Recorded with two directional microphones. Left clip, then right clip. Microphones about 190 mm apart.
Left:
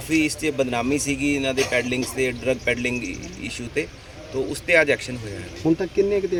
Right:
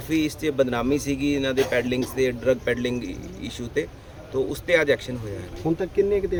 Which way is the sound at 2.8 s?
65° right (ahead or behind).